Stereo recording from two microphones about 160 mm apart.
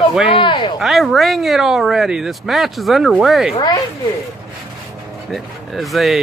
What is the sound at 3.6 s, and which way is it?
Speech, 20° left (ahead or behind).